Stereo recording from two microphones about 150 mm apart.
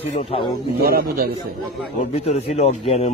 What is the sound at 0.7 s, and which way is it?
Speech, 80° right.